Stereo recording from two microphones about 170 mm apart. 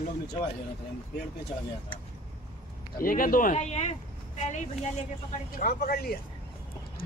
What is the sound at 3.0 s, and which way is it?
Speech, 55° left (ahead or behind).